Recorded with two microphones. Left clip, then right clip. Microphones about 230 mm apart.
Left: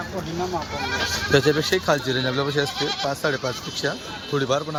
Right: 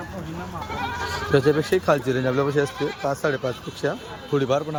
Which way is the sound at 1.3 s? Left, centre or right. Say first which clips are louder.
Even; centre.